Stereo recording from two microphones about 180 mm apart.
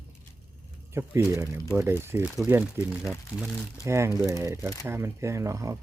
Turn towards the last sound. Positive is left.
turn(degrees=-20)  # may be behind; listen again after turning